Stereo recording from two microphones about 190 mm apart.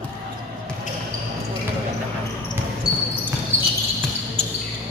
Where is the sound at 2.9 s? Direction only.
20° left (ahead or behind).